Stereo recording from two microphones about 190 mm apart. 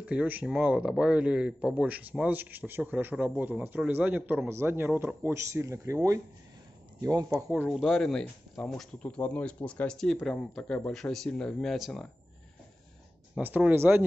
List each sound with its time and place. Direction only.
0.0 s speech: 10° right (ahead or behind)
7.4 s speech: centre (ahead or behind)
13.3 s speech: 5° right (ahead or behind)